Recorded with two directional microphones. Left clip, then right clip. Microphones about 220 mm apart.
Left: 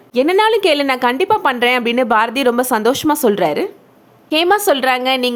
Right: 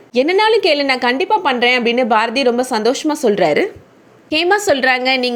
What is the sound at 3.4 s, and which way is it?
Speech, 5° right (ahead or behind).